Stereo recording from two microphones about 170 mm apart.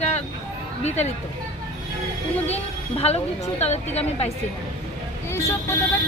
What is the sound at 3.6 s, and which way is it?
Speech, 40° left (ahead or behind).